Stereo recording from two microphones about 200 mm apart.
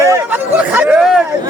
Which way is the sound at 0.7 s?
5° right (ahead or behind).